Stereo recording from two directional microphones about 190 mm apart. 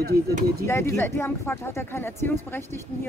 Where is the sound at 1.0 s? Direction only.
10° left (ahead or behind).